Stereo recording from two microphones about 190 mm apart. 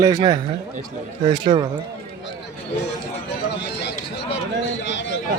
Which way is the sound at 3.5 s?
65° left (ahead or behind).